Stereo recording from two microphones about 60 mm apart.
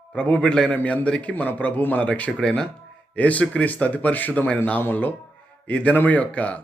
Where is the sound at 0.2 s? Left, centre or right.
Centre.